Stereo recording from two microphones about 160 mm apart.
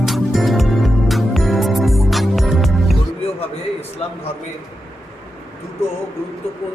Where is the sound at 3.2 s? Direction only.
40° left (ahead or behind).